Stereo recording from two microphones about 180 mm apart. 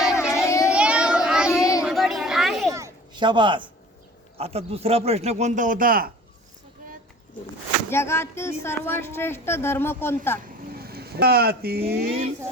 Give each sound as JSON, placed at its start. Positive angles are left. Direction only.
{"t": 0.0, "sound": "child singing", "side_deg": -5}
{"t": 0.3, "sound": "child singing", "side_deg": 15}
{"t": 0.7, "sound": "child singing", "side_deg": -5}
{"t": 1.8, "sound": "a sound", "side_deg": 0}
{"t": 2.7, "sound": "a sound", "side_deg": -20}
{"t": 4.4, "sound": "speech", "side_deg": -35}
{"t": 7.9, "sound": "speech", "side_deg": 15}
{"t": 10.8, "sound": "speech", "side_deg": -60}